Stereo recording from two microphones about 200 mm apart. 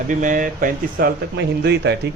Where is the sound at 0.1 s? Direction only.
40° right (ahead or behind).